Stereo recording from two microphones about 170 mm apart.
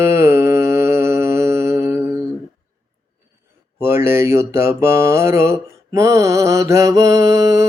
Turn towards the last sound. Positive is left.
turn(degrees=-20)  # may be behind; listen again after turning